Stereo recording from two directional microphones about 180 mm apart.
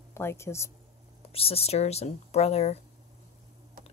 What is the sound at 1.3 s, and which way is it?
Speech, 35° left (ahead or behind).